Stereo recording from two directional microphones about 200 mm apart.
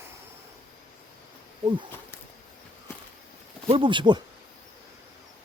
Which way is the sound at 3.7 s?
25° right (ahead or behind).